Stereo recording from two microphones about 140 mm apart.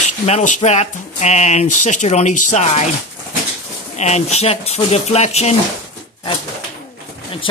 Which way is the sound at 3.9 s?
50° left (ahead or behind).